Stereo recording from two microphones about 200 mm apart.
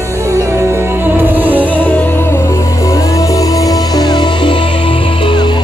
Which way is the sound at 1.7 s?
10° left (ahead or behind).